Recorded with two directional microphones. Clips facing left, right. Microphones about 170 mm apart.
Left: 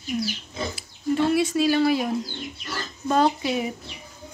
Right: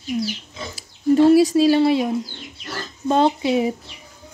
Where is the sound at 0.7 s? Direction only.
35° right (ahead or behind).